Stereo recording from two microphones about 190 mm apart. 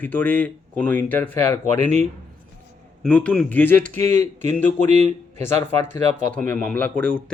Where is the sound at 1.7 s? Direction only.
40° right (ahead or behind).